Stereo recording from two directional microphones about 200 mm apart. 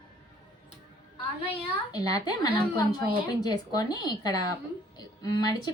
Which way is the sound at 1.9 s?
20° left (ahead or behind).